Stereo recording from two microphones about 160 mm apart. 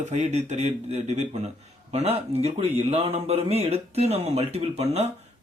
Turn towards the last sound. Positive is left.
turn(degrees=-40)  # may be behind; listen again after turning